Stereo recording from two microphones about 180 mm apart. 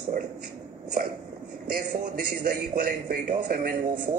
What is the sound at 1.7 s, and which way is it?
A man's voice, 55° right (ahead or behind).